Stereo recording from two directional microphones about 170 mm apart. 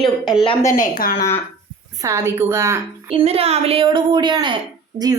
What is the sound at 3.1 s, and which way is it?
A woman's voice, 35° right (ahead or behind).